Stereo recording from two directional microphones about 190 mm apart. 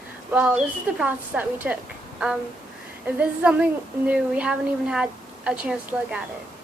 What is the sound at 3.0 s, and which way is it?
A woman's voice, 10° right (ahead or behind).